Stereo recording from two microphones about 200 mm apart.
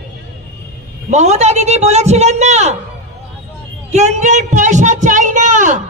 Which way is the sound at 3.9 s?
35° right (ahead or behind).